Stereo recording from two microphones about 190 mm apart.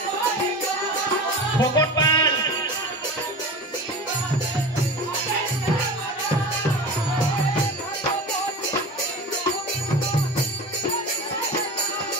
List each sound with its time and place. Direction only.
1.6 s music: 20° left (ahead or behind)